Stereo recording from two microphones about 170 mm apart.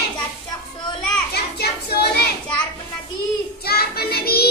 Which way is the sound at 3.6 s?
65° left (ahead or behind).